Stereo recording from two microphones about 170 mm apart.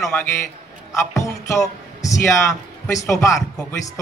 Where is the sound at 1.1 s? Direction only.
20° left (ahead or behind).